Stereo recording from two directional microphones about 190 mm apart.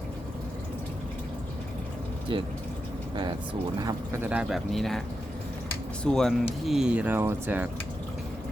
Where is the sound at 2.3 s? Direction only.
25° right (ahead or behind).